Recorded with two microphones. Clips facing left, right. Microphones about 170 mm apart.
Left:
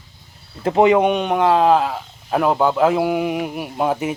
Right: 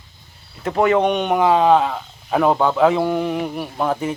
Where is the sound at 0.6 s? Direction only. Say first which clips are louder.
Left 3 dB; 20° left (ahead or behind).